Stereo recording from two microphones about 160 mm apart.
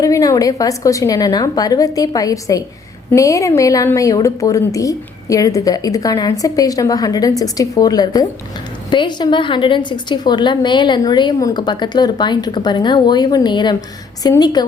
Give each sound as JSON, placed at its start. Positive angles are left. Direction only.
{"t": 0.0, "sound": "a woman's voice", "side_deg": 20}